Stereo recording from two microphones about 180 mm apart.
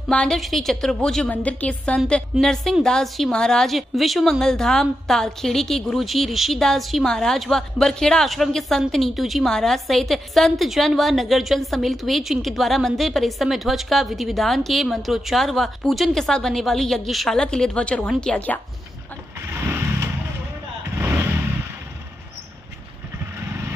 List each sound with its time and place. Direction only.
0.1 s a woman's voice: 5° left (ahead or behind)